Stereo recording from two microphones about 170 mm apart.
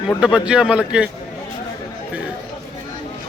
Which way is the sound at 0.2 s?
5° right (ahead or behind).